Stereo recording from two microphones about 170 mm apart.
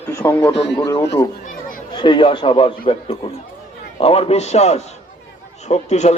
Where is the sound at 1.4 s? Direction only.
50° left (ahead or behind).